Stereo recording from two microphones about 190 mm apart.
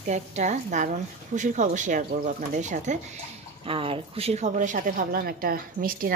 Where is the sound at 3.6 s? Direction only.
30° right (ahead or behind); by 6.2 s 50° right (ahead or behind).